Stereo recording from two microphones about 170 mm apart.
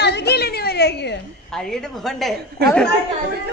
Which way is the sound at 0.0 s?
75° left (ahead or behind).